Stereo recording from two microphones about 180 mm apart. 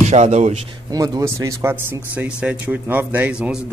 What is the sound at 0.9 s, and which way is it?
A man's voice, 20° right (ahead or behind).